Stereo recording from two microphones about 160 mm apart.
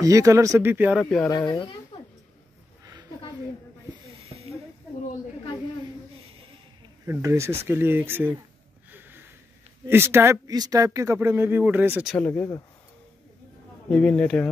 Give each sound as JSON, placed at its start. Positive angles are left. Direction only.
{"t": 0.0, "sound": "speech", "side_deg": -20}
{"t": 0.9, "sound": "speech", "side_deg": 5}
{"t": 1.3, "sound": "speech", "side_deg": 25}
{"t": 2.8, "sound": "a sound", "side_deg": -20}
{"t": 7.1, "sound": "speech", "side_deg": -20}
{"t": 8.9, "sound": "a sound", "side_deg": -15}
{"t": 9.8, "sound": "speech", "side_deg": -15}
{"t": 12.2, "sound": "speech", "side_deg": 15}
{"t": 13.8, "sound": "speech", "side_deg": 10}